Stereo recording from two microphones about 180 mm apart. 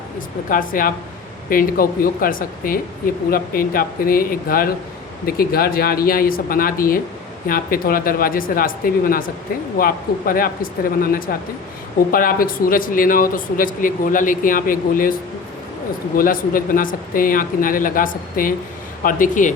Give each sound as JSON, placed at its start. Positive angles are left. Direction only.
{"t": 0.5, "sound": "speech", "side_deg": 50}
{"t": 16.1, "sound": "speech", "side_deg": 50}